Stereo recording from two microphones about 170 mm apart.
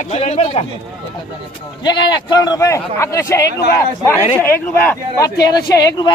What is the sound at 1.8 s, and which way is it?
Speech, 25° left (ahead or behind).